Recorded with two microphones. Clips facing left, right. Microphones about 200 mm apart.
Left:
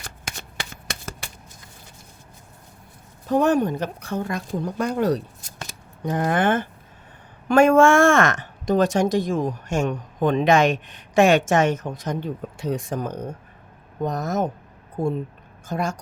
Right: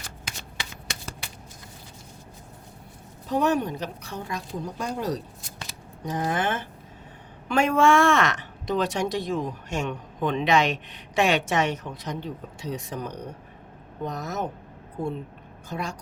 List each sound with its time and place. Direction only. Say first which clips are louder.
0.3 s shuffling cards: left 4 dB; 50° left (ahead or behind)
3.2 s speech: left 5 dB; 50° left (ahead or behind)
5.4 s scissors: left 2 dB; 45° left (ahead or behind)
7.4 s speech: left 6 dB; 45° left (ahead or behind)
15.7 s speech: left 6 dB; 45° left (ahead or behind)